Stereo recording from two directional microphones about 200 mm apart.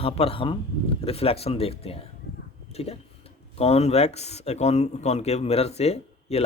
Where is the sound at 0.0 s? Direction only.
30° left (ahead or behind).